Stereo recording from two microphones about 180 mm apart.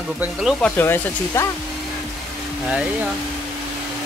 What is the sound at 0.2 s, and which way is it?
Speech, centre (ahead or behind).